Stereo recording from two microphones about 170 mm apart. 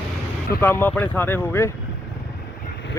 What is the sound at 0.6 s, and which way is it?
Speech, 10° left (ahead or behind).